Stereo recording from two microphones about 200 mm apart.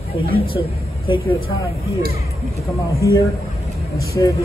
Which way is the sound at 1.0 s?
25° left (ahead or behind).